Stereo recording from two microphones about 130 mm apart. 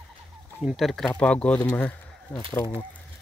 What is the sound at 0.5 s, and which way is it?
Speech, 5° right (ahead or behind).